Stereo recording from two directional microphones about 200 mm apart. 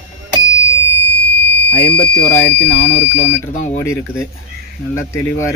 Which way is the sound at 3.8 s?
15° left (ahead or behind).